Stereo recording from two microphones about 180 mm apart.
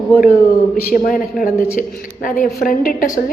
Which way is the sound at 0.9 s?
50° left (ahead or behind).